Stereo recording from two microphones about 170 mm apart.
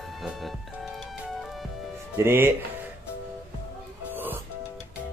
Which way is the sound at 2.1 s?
15° right (ahead or behind).